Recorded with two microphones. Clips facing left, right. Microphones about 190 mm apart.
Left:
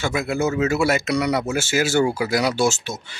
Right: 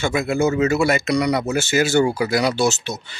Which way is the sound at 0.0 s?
Centre (ahead or behind).